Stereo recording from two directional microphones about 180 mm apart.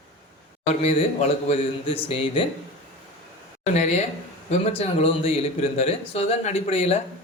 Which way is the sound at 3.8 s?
40° left (ahead or behind).